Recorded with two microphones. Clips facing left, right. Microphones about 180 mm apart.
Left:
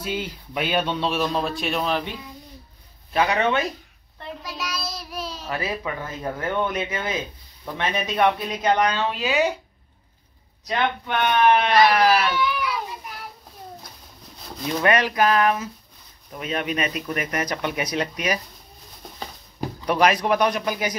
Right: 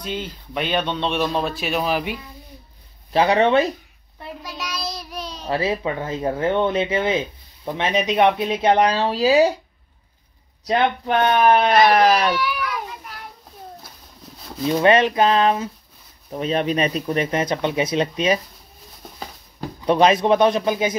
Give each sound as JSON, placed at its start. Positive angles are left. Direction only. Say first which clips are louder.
{"t": 0.0, "sound": "speech", "louder": "even", "side_deg": 10}
{"t": 3.1, "sound": "speech", "louder": "right 5 dB", "side_deg": -30}
{"t": 4.2, "sound": "child singing", "louder": "even", "side_deg": -5}
{"t": 5.5, "sound": "speech", "louder": "right 7 dB", "side_deg": -30}
{"t": 10.7, "sound": "speech", "louder": "right 5 dB", "side_deg": -35}
{"t": 14.3, "sound": "a sound", "louder": "right 7 dB", "side_deg": 0}
{"t": 14.7, "sound": "speech", "louder": "right 5 dB", "side_deg": -25}
{"t": 19.9, "sound": "speech", "louder": "right 4 dB", "side_deg": -25}